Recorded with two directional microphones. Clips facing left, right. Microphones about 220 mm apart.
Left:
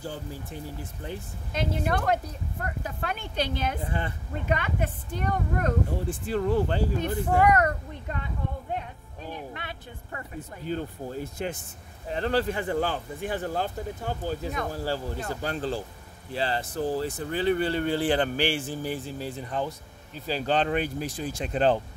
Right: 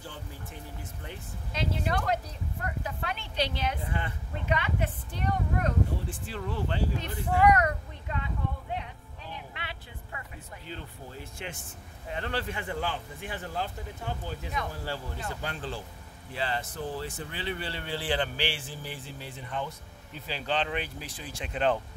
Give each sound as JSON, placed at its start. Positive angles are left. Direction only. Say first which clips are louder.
{"t": 0.0, "sound": "speech", "louder": "left 7 dB", "side_deg": 40}
{"t": 3.8, "sound": "speech", "louder": "left 3 dB", "side_deg": 35}